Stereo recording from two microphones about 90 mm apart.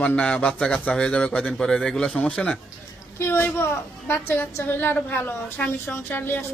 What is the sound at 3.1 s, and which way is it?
A woman's voice, 30° left (ahead or behind).